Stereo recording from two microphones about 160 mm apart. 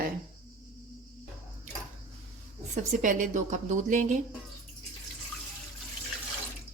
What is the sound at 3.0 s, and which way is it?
A woman's voice, 55° right (ahead or behind).